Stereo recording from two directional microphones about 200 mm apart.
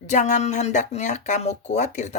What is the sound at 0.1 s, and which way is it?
A woman's voice, 35° left (ahead or behind).